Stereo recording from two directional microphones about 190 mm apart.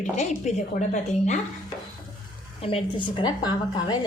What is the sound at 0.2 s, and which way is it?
Speech, 35° left (ahead or behind).